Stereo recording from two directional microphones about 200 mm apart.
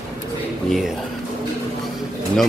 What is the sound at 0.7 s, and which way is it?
Speech, centre (ahead or behind).